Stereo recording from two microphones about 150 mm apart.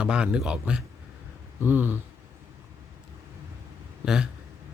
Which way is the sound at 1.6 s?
15° right (ahead or behind).